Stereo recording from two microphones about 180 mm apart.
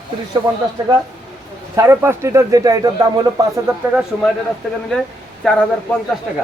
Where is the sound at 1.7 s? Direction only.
15° right (ahead or behind).